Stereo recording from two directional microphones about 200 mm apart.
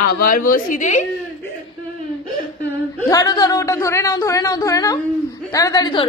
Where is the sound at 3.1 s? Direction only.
20° left (ahead or behind).